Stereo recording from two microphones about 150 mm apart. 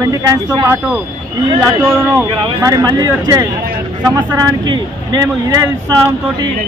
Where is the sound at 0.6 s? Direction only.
10° right (ahead or behind).